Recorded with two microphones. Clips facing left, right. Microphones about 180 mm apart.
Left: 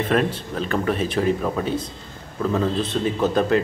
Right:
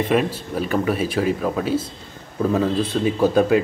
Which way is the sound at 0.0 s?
10° right (ahead or behind).